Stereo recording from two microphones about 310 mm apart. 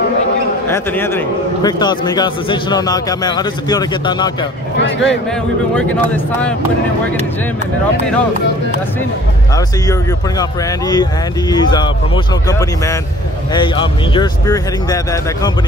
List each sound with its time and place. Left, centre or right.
0.7 s a man's voice: centre
4.7 s speech: left
11.5 s a man's voice: centre